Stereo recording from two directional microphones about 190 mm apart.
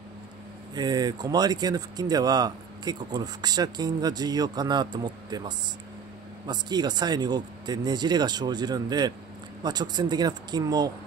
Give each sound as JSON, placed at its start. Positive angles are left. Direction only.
{"t": 0.7, "sound": "speech", "side_deg": -20}